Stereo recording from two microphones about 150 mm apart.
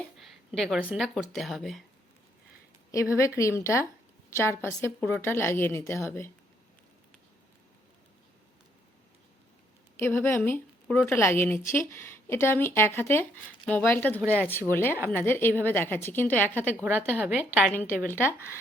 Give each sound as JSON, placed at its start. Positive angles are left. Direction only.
{"t": 0.2, "sound": "a sound", "side_deg": 0}
{"t": 0.8, "sound": "a woman's voice", "side_deg": -10}
{"t": 3.2, "sound": "a woman's voice", "side_deg": 20}
{"t": 10.0, "sound": "a woman's voice", "side_deg": 15}
{"t": 14.3, "sound": "a woman's voice", "side_deg": -15}
{"t": 14.7, "sound": "a woman's voice", "side_deg": 15}
{"t": 16.8, "sound": "a woman's voice", "side_deg": -10}
{"t": 17.7, "sound": "a woman's voice", "side_deg": 15}